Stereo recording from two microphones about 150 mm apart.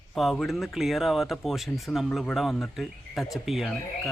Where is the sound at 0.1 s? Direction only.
Centre (ahead or behind).